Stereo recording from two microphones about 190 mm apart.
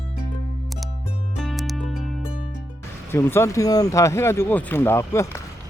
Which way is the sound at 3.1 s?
15° left (ahead or behind).